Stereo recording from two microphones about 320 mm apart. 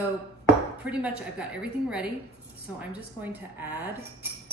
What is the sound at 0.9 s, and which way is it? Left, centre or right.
A woman's voice, centre.